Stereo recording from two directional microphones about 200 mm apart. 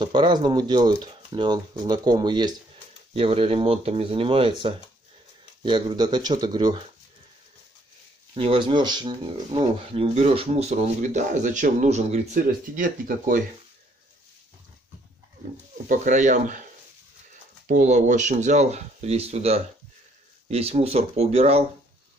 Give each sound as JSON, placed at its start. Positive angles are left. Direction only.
{"t": 0.0, "sound": "speech", "side_deg": -25}
{"t": 8.4, "sound": "speech", "side_deg": -25}
{"t": 15.9, "sound": "speech", "side_deg": -40}
{"t": 17.6, "sound": "speech", "side_deg": -40}